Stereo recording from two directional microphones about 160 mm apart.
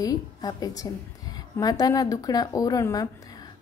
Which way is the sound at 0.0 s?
25° left (ahead or behind).